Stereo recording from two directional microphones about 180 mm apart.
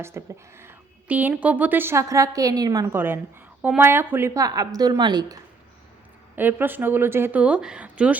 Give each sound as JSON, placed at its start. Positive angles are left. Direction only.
{"t": 0.0, "sound": "a woman's voice", "side_deg": -15}
{"t": 6.3, "sound": "a woman's voice", "side_deg": -10}